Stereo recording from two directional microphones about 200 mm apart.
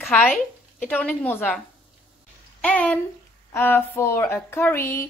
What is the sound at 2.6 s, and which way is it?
Speech, 5° left (ahead or behind).